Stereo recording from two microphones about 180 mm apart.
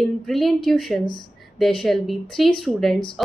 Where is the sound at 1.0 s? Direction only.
25° left (ahead or behind).